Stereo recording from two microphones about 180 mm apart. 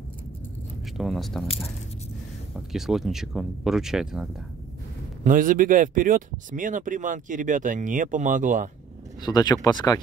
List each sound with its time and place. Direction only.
0.9 s speech: centre (ahead or behind)
2.7 s speech: centre (ahead or behind)
5.2 s speech: 50° right (ahead or behind)
9.2 s speech: 25° left (ahead or behind)